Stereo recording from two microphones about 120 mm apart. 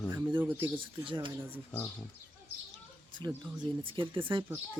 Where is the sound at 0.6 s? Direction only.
45° right (ahead or behind).